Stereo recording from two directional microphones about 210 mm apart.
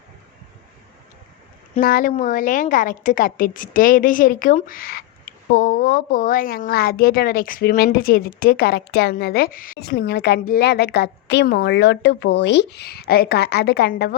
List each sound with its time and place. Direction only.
1.7 s a woman's voice: 40° left (ahead or behind)